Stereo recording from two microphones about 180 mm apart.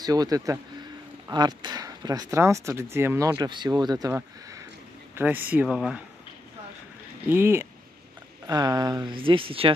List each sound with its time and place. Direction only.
0.0 s speech: 20° right (ahead or behind); by 6.0 s 5° right (ahead or behind)
7.2 s speech: 15° right (ahead or behind); by 9.8 s 30° right (ahead or behind)